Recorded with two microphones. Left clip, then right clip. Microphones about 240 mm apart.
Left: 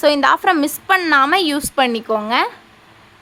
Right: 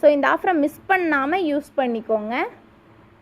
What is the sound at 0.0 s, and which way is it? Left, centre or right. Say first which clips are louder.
A woman's voice: left 3 dB; centre.